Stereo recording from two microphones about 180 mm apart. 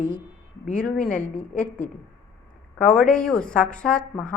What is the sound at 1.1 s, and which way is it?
Speech, 50° left (ahead or behind).